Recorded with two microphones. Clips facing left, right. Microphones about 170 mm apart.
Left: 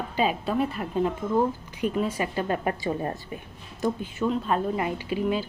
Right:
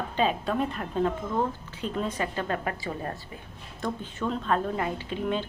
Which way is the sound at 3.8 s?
5° left (ahead or behind).